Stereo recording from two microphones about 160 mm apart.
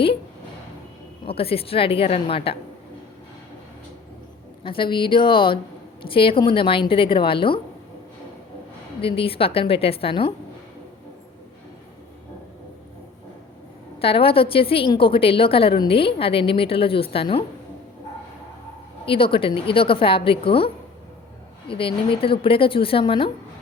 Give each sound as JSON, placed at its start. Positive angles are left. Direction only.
{"t": 1.3, "sound": "a woman's voice", "side_deg": 35}
{"t": 4.6, "sound": "a woman's voice", "side_deg": 30}
{"t": 9.0, "sound": "a woman's voice", "side_deg": 35}
{"t": 14.0, "sound": "a woman's voice", "side_deg": 35}
{"t": 19.0, "sound": "a woman's voice", "side_deg": 35}
{"t": 21.7, "sound": "a woman's voice", "side_deg": 35}